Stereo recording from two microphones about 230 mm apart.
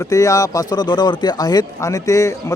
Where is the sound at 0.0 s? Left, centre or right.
Centre.